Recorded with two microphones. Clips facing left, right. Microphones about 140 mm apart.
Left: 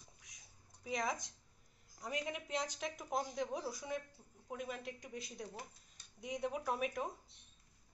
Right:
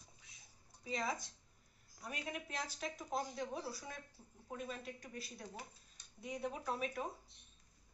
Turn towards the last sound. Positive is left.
turn(degrees=10)  # may be behind; listen again after turning